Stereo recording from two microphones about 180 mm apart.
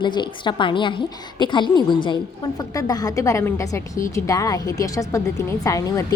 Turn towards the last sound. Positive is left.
turn(degrees=20)  # may be behind; listen again after turning